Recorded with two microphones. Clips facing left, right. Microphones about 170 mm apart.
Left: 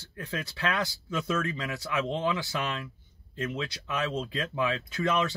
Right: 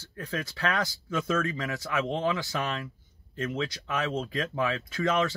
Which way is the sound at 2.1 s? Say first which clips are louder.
Right 1 dB; 20° left (ahead or behind).